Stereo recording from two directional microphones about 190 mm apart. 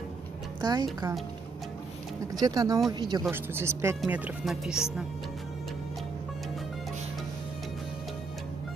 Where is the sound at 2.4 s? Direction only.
20° right (ahead or behind).